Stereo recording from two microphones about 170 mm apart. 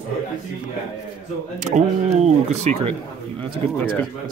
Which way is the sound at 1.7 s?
40° right (ahead or behind).